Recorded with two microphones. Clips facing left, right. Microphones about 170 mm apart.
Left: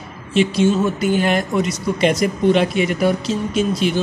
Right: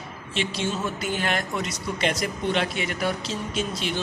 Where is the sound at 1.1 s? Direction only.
15° left (ahead or behind).